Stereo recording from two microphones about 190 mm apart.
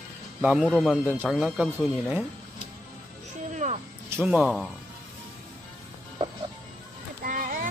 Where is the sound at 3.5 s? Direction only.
35° right (ahead or behind).